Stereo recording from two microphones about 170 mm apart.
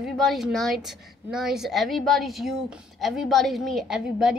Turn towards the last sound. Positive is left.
turn(degrees=-5)  # may be behind; listen again after turning